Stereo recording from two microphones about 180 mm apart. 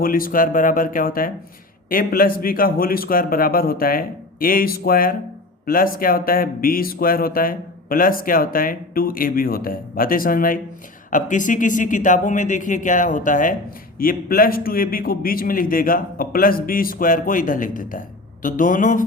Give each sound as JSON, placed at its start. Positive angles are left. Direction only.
{"t": 0.0, "sound": "speech", "side_deg": 50}